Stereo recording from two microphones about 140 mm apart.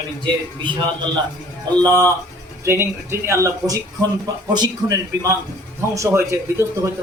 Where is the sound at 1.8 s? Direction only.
25° right (ahead or behind).